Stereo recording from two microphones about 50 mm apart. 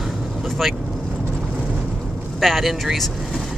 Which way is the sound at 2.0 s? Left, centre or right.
Centre.